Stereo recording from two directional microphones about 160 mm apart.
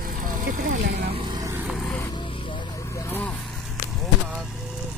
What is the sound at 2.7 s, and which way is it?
Vehicle, 20° left (ahead or behind).